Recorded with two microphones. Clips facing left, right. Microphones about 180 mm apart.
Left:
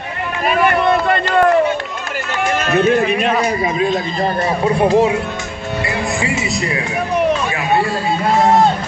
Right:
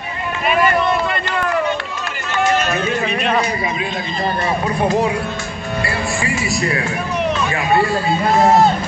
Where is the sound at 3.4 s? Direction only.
40° left (ahead or behind).